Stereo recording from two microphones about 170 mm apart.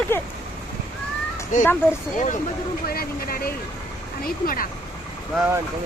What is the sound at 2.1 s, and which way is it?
Speech, 45° left (ahead or behind).